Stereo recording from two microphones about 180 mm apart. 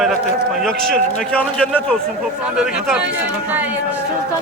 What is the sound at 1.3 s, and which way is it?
A man's voice, 5° left (ahead or behind).